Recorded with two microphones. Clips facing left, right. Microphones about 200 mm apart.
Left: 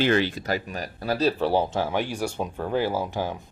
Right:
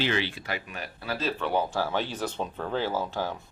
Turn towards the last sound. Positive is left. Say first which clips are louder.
# left 3 dB
turn(degrees=15)  # may be behind; listen again after turning